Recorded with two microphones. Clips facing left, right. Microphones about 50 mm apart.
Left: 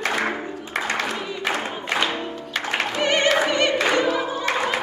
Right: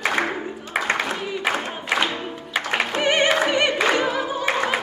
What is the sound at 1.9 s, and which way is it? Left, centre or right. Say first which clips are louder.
Music: right 1 dB; centre.